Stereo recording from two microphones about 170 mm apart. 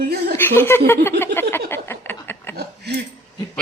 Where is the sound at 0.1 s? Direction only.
70° right (ahead or behind).